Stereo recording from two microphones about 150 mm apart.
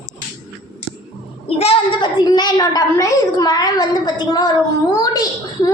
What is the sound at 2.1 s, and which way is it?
A woman's voice, 25° left (ahead or behind).